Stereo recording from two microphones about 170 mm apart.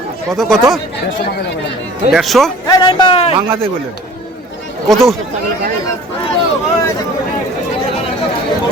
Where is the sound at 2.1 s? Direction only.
Centre (ahead or behind).